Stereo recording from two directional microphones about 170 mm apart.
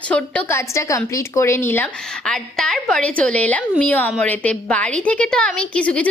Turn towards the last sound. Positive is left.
turn(degrees=10)  # may be behind; listen again after turning